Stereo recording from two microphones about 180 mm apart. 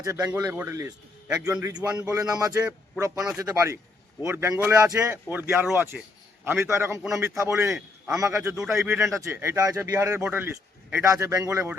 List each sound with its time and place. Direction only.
0.0 s a man's voice: 20° right (ahead or behind)
1.8 s a man's voice: 5° right (ahead or behind)
2.1 s a man's voice: 20° right (ahead or behind)